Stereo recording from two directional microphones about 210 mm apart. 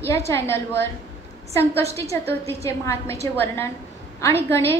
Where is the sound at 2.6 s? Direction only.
15° left (ahead or behind).